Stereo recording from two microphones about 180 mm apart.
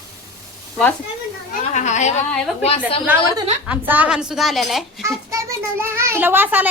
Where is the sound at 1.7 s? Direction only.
40° left (ahead or behind).